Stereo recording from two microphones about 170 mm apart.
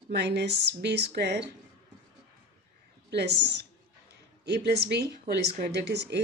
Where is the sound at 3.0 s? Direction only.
80° right.